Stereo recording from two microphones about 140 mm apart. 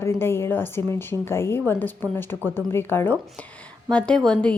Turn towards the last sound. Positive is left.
turn(degrees=5)  # may be behind; listen again after turning